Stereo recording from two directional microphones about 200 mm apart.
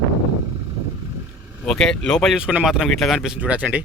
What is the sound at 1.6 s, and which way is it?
Speech, 5° left (ahead or behind).